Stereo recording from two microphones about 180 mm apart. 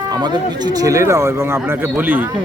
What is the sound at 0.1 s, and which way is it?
Speech, 25° right (ahead or behind).